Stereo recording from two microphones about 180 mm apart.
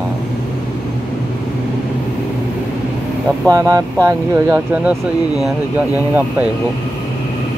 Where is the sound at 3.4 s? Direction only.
20° right (ahead or behind).